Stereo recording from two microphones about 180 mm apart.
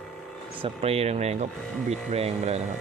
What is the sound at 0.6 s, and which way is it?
Speech, 35° right (ahead or behind).